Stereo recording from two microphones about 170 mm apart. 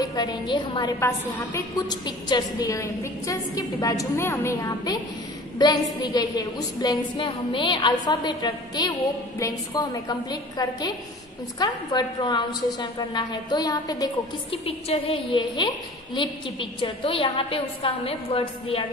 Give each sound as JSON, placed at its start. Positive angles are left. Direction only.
{"t": 0.0, "sound": "a woman's voice", "side_deg": 25}
{"t": 14.5, "sound": "a woman's voice", "side_deg": 35}